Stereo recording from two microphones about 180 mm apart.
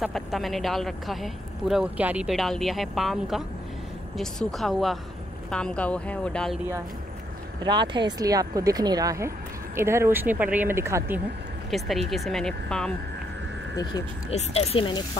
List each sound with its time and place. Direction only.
0.0 s speech: centre (ahead or behind)
7.6 s speech: 25° right (ahead or behind)
11.7 s speech: centre (ahead or behind)
14.3 s speech: 35° left (ahead or behind)